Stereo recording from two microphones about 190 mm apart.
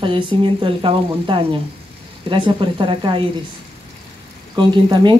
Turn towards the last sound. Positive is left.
turn(degrees=-25)  # may be behind; listen again after turning